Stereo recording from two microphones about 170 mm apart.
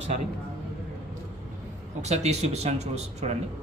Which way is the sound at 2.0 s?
40° right (ahead or behind).